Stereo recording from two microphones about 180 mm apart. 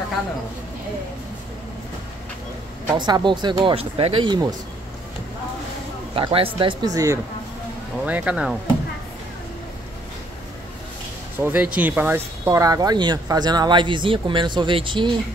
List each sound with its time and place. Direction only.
2.9 s speech: 25° right (ahead or behind)
6.1 s speech: 30° right (ahead or behind)
8.0 s speech: 10° right (ahead or behind)
11.3 s speech: 10° right (ahead or behind); by 15.1 s 25° right (ahead or behind)